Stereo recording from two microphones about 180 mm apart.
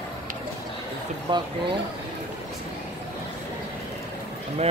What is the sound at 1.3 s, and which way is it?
Speech, 25° right (ahead or behind).